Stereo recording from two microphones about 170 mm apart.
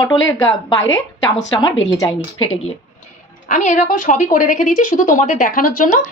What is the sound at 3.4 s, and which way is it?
A woman's voice, 45° left (ahead or behind).